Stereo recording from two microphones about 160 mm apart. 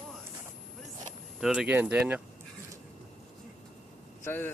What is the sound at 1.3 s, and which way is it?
Speech, 5° right (ahead or behind).